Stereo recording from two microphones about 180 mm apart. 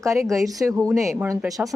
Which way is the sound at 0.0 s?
15° right (ahead or behind).